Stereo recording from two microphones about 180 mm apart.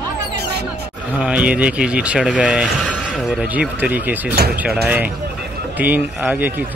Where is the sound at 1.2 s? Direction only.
5° right (ahead or behind).